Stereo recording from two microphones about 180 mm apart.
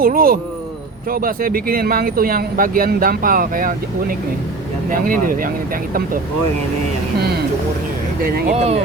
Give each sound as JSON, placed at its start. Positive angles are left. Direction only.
{"t": 0.0, "sound": "speech", "side_deg": -55}
{"t": 4.9, "sound": "speech", "side_deg": -50}
{"t": 8.4, "sound": "speech", "side_deg": -35}